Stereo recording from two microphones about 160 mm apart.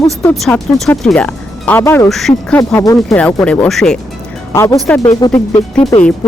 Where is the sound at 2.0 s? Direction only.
Centre (ahead or behind).